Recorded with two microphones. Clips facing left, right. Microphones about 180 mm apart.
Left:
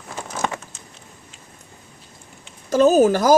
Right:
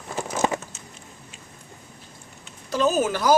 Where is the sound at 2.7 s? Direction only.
40° left (ahead or behind).